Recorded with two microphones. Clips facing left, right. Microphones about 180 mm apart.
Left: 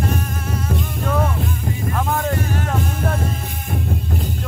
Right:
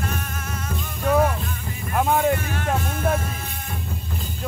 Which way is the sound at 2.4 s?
40° left (ahead or behind).